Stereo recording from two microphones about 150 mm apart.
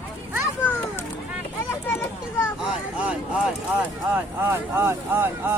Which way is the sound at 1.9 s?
15° left (ahead or behind).